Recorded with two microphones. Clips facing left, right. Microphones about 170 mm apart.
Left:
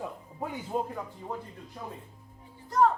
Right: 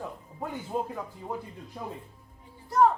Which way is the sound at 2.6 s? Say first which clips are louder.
Right 2 dB; 10° right (ahead or behind).